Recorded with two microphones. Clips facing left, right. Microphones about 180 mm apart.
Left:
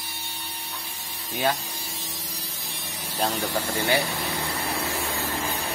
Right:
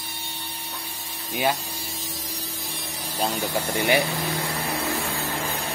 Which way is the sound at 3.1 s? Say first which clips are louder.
Even; 10° right (ahead or behind).